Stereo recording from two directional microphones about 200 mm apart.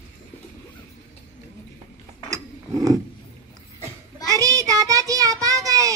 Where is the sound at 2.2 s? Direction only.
15° right (ahead or behind).